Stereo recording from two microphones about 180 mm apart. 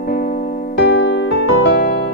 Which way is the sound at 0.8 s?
90° left.